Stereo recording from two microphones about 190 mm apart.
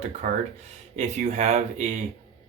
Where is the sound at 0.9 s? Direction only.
35° right (ahead or behind).